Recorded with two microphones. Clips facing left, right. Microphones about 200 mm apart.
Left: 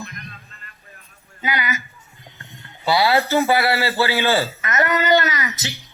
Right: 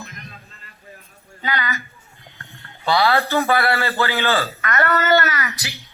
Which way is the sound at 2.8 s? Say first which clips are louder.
Even; 10° left (ahead or behind).